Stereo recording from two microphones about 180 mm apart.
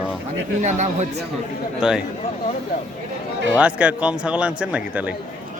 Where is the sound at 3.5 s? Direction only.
10° right (ahead or behind).